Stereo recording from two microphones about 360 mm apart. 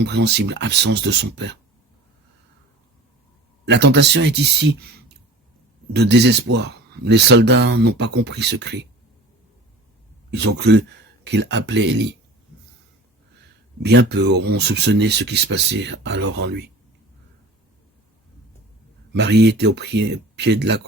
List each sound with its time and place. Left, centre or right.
0.0 s speech: right
3.7 s speech: right
10.3 s speech: right
13.8 s speech: right
19.1 s speech: right